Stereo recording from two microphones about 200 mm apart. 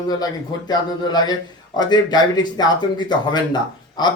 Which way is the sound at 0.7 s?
20° left (ahead or behind).